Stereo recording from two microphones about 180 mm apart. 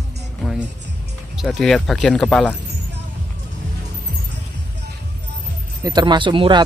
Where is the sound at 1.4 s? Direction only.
Centre (ahead or behind).